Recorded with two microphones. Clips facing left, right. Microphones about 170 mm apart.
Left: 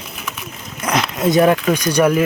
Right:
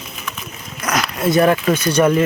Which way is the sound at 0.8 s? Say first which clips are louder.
Left 2 dB; 25° left (ahead or behind).